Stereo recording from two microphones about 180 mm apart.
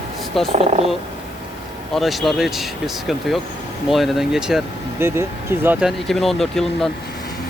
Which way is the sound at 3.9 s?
Centre (ahead or behind).